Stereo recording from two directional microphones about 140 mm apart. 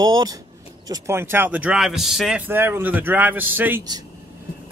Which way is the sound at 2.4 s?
15° right (ahead or behind).